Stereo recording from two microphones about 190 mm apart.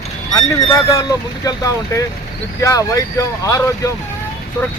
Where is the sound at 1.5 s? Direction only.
15° left (ahead or behind).